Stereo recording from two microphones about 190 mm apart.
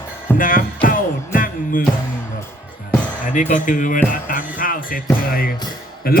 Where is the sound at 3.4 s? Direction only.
45° left (ahead or behind).